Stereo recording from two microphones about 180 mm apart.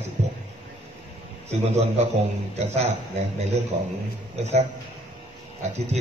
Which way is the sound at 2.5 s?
35° right (ahead or behind).